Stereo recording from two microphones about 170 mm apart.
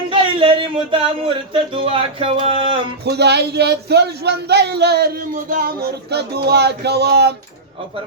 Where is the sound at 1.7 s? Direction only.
30° right (ahead or behind).